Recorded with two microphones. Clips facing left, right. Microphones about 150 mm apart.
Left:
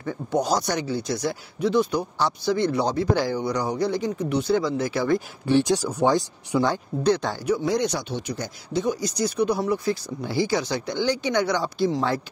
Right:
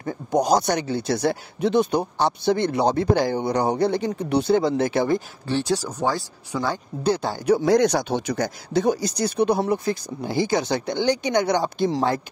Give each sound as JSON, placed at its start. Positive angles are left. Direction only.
{"t": 0.3, "sound": "speech", "side_deg": -15}
{"t": 0.7, "sound": "speech", "side_deg": -60}
{"t": 4.3, "sound": "speech", "side_deg": -30}
{"t": 4.6, "sound": "speech", "side_deg": -60}
{"t": 5.5, "sound": "speech", "side_deg": 15}
{"t": 6.6, "sound": "speech", "side_deg": -5}
{"t": 7.4, "sound": "speech", "side_deg": -70}
{"t": 7.9, "sound": "speech", "side_deg": -45}
{"t": 8.4, "sound": "speech", "side_deg": -70}
{"t": 9.4, "sound": "speech", "side_deg": -25}
{"t": 10.2, "sound": "speech", "side_deg": -50}